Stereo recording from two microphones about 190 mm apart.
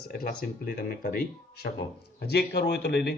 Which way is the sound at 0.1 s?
55° left (ahead or behind).